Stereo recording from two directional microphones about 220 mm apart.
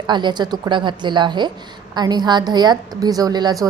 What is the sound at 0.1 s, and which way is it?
A woman's voice, 20° right (ahead or behind).